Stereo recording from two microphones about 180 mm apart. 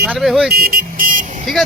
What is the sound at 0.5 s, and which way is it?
Vehicle, 55° right (ahead or behind).